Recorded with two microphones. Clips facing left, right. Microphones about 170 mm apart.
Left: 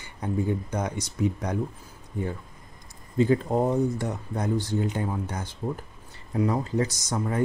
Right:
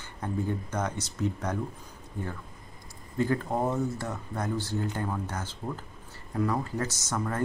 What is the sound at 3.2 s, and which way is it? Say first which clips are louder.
Speech: left 5 dB; 20° left (ahead or behind).